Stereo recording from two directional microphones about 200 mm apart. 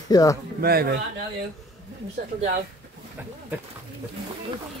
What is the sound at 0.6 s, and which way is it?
Speech, 50° right (ahead or behind).